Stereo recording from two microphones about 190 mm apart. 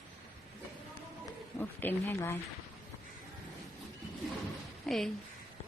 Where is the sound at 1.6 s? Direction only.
10° left (ahead or behind).